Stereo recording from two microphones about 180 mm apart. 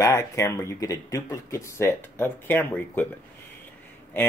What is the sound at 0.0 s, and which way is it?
Speech, 15° left (ahead or behind).